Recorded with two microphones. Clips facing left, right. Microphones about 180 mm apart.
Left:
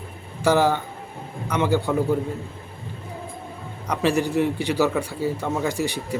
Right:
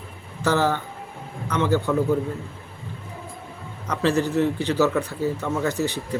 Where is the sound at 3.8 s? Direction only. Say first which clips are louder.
Even; 15° left (ahead or behind).